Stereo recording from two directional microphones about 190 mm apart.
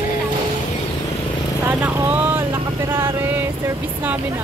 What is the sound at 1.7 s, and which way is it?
Vehicle, 10° right (ahead or behind).